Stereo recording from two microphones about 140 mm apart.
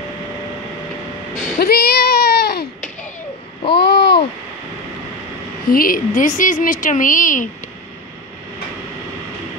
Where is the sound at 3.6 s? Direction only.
40° left (ahead or behind).